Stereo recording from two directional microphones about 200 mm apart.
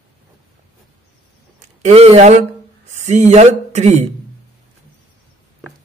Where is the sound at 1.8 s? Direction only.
30° right (ahead or behind).